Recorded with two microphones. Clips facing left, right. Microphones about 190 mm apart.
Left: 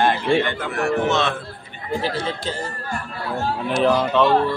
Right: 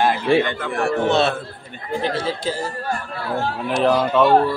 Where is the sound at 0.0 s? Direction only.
5° right (ahead or behind).